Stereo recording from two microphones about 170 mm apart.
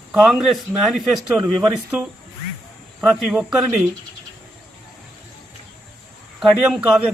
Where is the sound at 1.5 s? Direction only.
20° right (ahead or behind).